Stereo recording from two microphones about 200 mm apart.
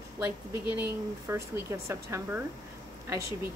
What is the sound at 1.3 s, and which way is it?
A woman's voice, 15° right (ahead or behind).